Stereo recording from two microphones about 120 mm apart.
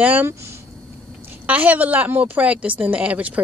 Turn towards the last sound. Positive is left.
turn(degrees=-10)  # may be behind; listen again after turning